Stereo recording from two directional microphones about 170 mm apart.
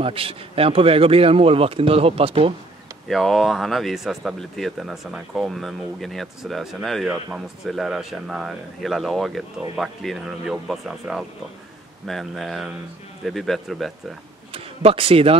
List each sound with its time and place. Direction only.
0.0 s speech: 35° right (ahead or behind)
3.1 s speech: centre (ahead or behind)
14.5 s speech: 35° right (ahead or behind)